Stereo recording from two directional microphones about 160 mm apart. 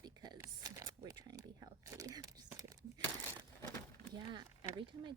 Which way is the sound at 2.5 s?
20° right (ahead or behind).